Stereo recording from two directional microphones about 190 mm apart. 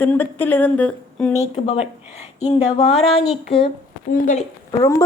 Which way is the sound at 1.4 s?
35° left (ahead or behind).